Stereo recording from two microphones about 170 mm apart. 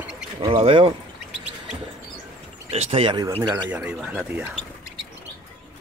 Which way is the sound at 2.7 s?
35° right (ahead or behind).